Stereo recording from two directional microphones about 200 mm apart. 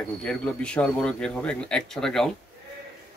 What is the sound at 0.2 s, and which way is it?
Speech, 5° left (ahead or behind).